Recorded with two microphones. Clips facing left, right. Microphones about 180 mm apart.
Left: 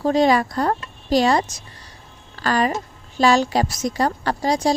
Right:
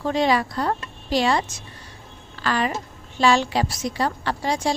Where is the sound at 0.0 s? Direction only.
40° left (ahead or behind).